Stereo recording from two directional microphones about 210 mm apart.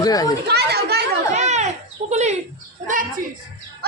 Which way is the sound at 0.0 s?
20° left (ahead or behind).